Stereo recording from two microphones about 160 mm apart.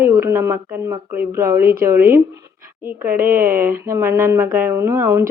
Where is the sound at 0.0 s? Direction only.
15° right (ahead or behind).